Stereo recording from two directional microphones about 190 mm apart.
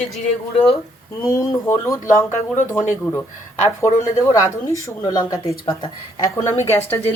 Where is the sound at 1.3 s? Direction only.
15° left (ahead or behind).